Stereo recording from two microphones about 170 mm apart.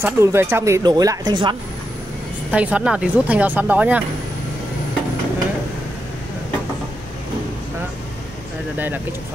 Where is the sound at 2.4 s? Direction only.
10° right (ahead or behind).